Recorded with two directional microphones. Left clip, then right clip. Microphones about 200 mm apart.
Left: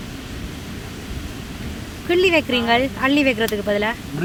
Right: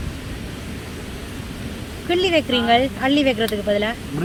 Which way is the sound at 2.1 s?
15° left (ahead or behind).